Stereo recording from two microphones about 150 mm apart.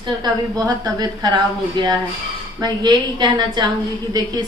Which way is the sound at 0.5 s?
25° right (ahead or behind).